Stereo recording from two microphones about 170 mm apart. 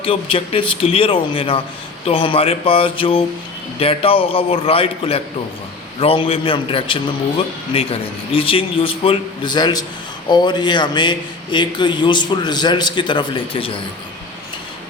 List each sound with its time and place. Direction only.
0.0 s a man's voice: 30° left (ahead or behind)